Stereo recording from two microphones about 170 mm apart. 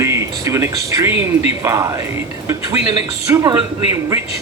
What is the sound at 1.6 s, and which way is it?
Speech, 20° right (ahead or behind).